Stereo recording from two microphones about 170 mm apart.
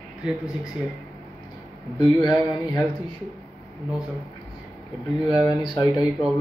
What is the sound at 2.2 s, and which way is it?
Speech, 25° left (ahead or behind).